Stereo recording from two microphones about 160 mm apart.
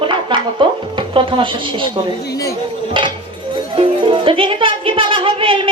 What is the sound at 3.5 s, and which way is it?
Speech, 35° right (ahead or behind).